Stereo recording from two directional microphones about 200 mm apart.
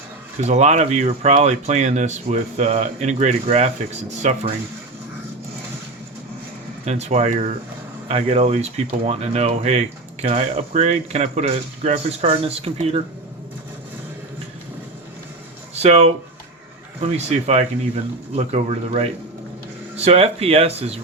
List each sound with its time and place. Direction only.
0.4 s speech: 35° right (ahead or behind)
6.8 s speech: 35° right (ahead or behind)
15.7 s speech: 35° right (ahead or behind)